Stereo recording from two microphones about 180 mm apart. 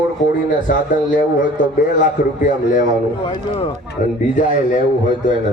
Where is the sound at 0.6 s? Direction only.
45° left (ahead or behind).